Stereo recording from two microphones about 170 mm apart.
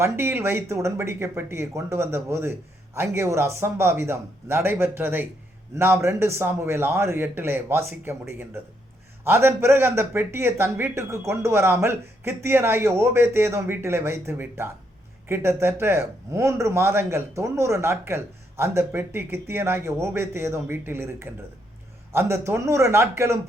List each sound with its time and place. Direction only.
0.0 s speech: 15° right (ahead or behind)